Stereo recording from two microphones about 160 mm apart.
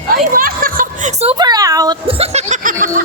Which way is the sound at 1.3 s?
25° right (ahead or behind).